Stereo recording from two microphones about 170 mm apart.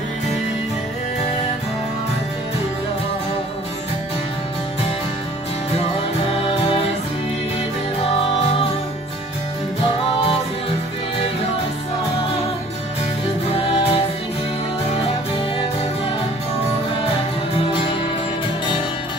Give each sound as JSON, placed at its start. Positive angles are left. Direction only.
{"t": 6.3, "sound": "music", "side_deg": 35}
{"t": 13.6, "sound": "music", "side_deg": 30}